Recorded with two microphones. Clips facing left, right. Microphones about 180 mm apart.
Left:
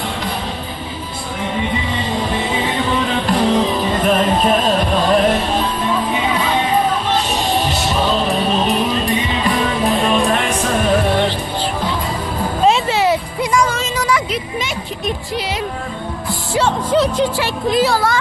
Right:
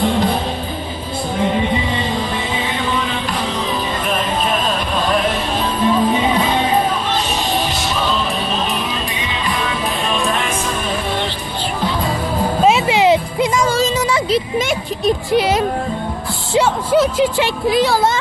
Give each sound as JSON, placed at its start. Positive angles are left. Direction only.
{"t": 12.9, "sound": "music", "side_deg": -20}
{"t": 13.7, "sound": "a sound", "side_deg": -30}
{"t": 15.3, "sound": "music", "side_deg": -60}
{"t": 16.6, "sound": "music", "side_deg": -5}
{"t": 17.7, "sound": "speech", "side_deg": 0}